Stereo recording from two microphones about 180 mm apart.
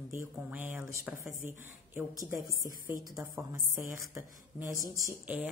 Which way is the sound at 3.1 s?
15° right (ahead or behind).